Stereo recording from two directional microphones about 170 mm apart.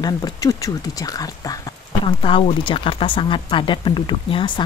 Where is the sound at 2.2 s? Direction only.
30° left (ahead or behind).